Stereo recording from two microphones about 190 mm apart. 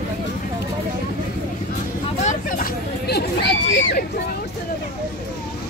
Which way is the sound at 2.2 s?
50° left (ahead or behind).